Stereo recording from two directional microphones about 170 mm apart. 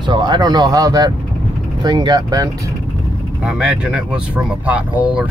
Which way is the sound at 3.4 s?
5° right (ahead or behind).